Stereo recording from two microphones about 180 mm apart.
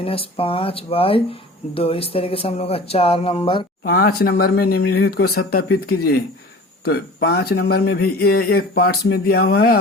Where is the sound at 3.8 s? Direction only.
55° left (ahead or behind).